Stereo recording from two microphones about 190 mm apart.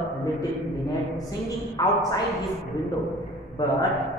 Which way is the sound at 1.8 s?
20° left (ahead or behind).